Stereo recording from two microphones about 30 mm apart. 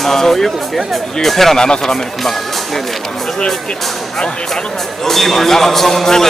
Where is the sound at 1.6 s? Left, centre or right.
Left.